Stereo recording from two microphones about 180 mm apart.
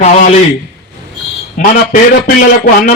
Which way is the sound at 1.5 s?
50° left (ahead or behind).